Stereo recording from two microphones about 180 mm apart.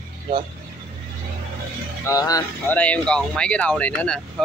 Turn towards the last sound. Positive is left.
turn(degrees=5)  # may be behind; listen again after turning